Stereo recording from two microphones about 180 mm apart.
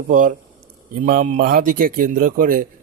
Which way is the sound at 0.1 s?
45° right (ahead or behind).